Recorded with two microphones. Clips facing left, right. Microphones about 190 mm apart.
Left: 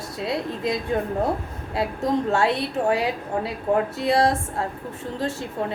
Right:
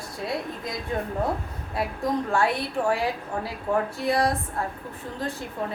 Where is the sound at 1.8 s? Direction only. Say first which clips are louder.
Left 3 dB; 25° left (ahead or behind).